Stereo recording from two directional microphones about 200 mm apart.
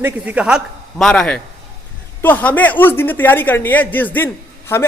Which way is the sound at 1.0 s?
5° left (ahead or behind).